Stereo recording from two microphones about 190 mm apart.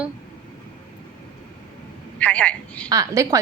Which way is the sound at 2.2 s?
5° left (ahead or behind).